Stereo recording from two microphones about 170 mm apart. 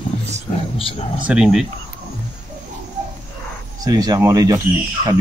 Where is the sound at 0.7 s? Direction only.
35° left (ahead or behind).